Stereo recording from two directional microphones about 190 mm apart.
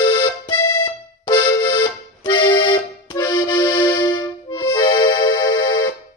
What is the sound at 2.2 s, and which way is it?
Accordion, 25° left (ahead or behind).